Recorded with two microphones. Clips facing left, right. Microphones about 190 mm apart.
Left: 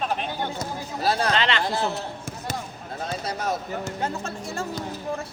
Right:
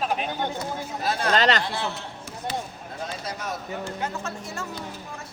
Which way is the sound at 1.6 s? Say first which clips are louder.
Left 4 dB; 40° left (ahead or behind).